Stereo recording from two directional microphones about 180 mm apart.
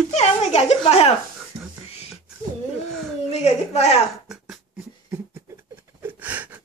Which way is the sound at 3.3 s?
35° left (ahead or behind).